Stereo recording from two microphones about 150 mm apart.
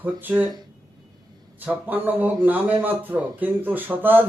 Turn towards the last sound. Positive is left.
turn(degrees=-15)  # may be behind; listen again after turning